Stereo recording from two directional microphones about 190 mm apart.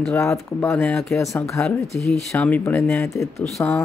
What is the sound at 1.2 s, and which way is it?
Speech, 15° left (ahead or behind).